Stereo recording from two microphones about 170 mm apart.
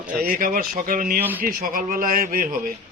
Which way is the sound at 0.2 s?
55° right (ahead or behind).